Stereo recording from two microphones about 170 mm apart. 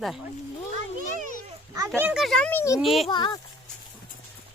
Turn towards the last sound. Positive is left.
turn(degrees=25)  # may be behind; listen again after turning